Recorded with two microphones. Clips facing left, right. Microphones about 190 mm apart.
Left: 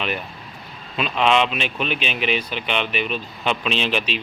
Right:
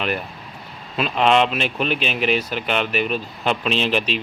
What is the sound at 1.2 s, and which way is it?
Speech, 45° right (ahead or behind).